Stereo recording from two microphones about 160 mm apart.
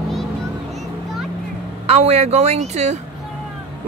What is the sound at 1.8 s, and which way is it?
Speech, 40° right (ahead or behind).